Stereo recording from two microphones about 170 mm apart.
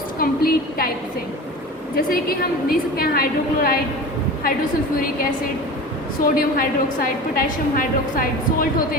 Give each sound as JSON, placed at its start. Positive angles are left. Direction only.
{"t": 0.2, "sound": "a woman's voice", "side_deg": 60}
{"t": 2.0, "sound": "a woman's voice", "side_deg": 60}
{"t": 6.2, "sound": "a woman's voice", "side_deg": 60}